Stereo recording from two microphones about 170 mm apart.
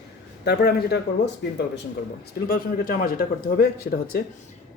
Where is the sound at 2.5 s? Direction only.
60° left (ahead or behind).